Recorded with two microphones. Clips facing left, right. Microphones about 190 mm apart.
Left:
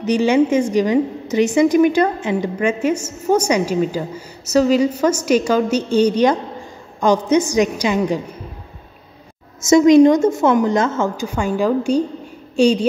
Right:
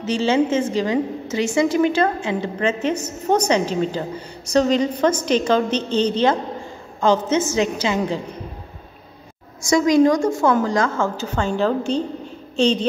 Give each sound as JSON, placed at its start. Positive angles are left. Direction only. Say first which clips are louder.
{"t": 0.0, "sound": "a woman's voice", "louder": "left 4 dB", "side_deg": 15}
{"t": 9.6, "sound": "a woman's voice", "louder": "left 6 dB", "side_deg": 25}